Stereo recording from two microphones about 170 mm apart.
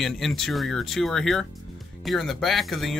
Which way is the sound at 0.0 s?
Centre (ahead or behind).